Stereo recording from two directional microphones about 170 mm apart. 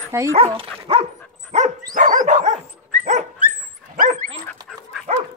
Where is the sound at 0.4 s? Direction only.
35° right (ahead or behind).